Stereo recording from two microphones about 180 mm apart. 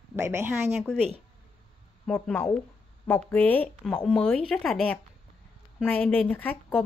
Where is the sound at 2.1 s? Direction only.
5° left (ahead or behind).